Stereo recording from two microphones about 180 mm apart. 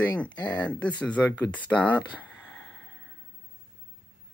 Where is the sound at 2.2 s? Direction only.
10° left (ahead or behind).